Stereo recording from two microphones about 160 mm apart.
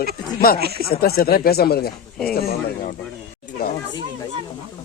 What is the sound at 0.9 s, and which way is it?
Speech, 70° left (ahead or behind).